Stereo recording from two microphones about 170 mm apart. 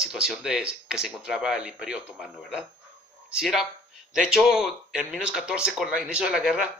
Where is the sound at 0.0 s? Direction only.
Centre (ahead or behind).